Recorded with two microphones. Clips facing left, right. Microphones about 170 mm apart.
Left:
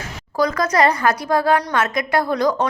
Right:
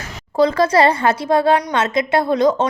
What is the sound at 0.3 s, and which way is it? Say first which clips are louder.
A woman's voice: right 4 dB; 30° right (ahead or behind).